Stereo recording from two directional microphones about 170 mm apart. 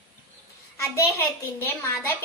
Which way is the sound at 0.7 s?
15° left (ahead or behind).